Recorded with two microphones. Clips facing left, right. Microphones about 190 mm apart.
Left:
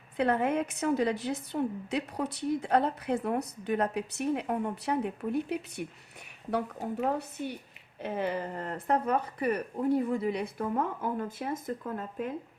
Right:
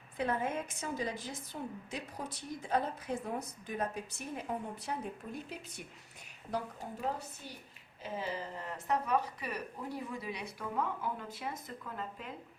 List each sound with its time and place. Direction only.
0.2 s a woman's voice: 65° left (ahead or behind)
7.0 s speech: 65° left (ahead or behind)